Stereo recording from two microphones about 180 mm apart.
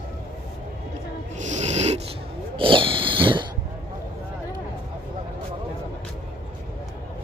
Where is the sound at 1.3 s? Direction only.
40° right (ahead or behind).